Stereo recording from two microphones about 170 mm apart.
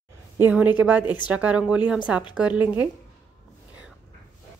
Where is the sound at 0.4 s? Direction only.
10° right (ahead or behind).